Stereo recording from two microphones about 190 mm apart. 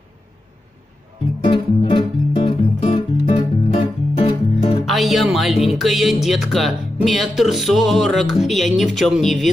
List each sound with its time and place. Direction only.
1.4 s music: 25° left (ahead or behind)
4.8 s speech: centre (ahead or behind)